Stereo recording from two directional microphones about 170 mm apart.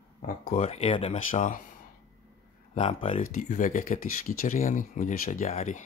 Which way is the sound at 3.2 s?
50° left (ahead or behind).